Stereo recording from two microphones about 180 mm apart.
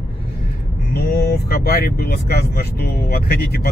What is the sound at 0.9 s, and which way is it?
Speech, 60° left (ahead or behind).